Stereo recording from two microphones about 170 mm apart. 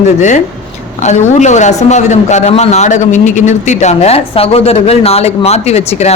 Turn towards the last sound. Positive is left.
turn(degrees=40)  # may be behind; listen again after turning